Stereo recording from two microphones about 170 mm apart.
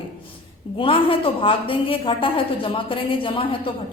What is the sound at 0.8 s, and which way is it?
A woman's voice, 30° left (ahead or behind).